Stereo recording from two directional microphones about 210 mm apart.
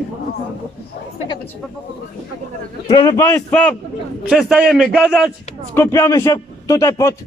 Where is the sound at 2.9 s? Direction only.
20° left (ahead or behind); by 5.3 s 5° right (ahead or behind).